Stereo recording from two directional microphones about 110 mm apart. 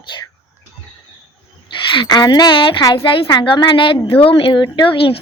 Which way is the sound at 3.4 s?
45° left (ahead or behind).